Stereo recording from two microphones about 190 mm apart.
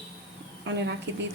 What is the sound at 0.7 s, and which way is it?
Speech, 65° right (ahead or behind).